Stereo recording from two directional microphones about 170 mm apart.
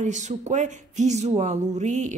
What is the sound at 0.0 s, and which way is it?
Speech, 45° right (ahead or behind).